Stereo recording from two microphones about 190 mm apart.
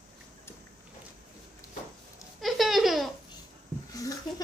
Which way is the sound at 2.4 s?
Centre (ahead or behind).